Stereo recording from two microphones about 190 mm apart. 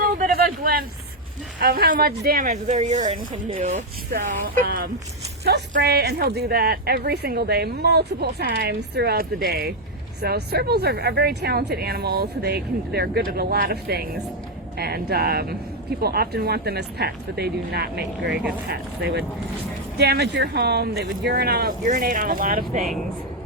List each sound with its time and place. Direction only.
0.2 s a sound: 50° right (ahead or behind)
1.6 s speech: 50° right (ahead or behind)
2.5 s speech: 40° right (ahead or behind); by 21.8 s 55° right (ahead or behind)
21.8 s speech: 45° right (ahead or behind)